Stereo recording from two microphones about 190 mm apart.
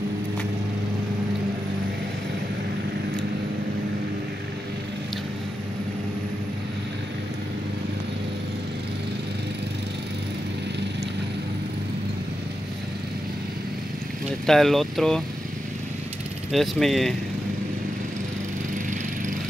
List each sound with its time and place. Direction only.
14.4 s speech: centre (ahead or behind)
16.5 s speech: centre (ahead or behind)